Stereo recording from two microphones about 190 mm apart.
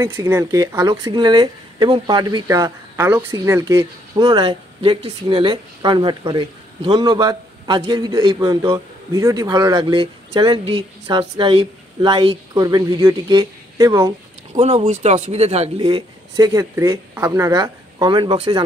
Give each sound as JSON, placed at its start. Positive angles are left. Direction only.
{"t": 0.0, "sound": "speech", "side_deg": -15}
{"t": 14.6, "sound": "speech", "side_deg": -35}